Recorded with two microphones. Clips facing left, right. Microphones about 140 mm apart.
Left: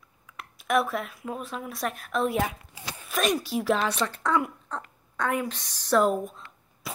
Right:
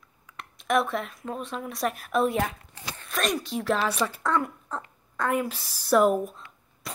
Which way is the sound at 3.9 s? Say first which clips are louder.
Even; 10° right (ahead or behind).